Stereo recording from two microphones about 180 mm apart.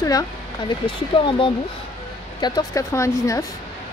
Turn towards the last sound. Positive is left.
turn(degrees=15)  # may be behind; listen again after turning